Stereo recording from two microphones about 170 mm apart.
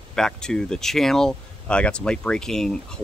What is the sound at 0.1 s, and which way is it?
Speech, 5° left (ahead or behind).